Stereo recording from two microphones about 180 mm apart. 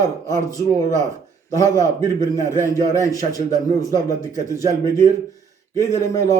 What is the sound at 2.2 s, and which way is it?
A man's voice, 15° left (ahead or behind).